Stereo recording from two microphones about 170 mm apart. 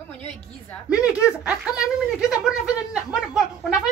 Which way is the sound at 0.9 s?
5° right (ahead or behind).